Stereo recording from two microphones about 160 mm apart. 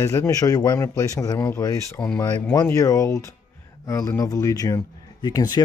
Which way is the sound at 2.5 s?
20° left (ahead or behind).